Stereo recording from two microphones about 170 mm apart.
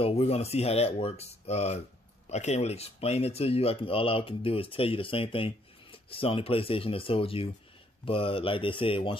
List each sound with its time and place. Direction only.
0.0 s speech: 35° left (ahead or behind)